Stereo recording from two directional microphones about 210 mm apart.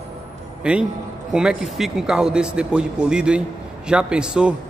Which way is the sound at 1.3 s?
5° right (ahead or behind).